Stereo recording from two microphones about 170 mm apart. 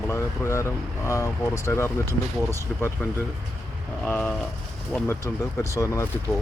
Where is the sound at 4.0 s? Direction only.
10° left (ahead or behind).